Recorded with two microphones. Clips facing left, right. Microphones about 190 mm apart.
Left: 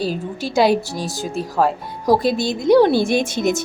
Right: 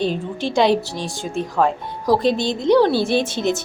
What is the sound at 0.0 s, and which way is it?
A woman's voice, 5° left (ahead or behind).